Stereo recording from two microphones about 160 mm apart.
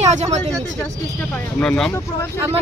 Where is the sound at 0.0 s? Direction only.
45° right (ahead or behind).